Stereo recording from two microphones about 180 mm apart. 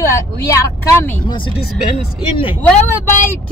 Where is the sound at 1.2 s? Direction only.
25° left (ahead or behind).